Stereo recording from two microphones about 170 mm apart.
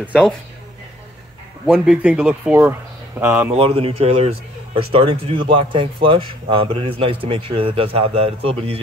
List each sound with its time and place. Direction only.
1.7 s speech: 5° right (ahead or behind)
3.5 s speech: 35° right (ahead or behind)